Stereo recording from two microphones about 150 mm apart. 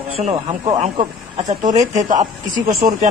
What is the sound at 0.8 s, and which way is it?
Speech, 50° right (ahead or behind).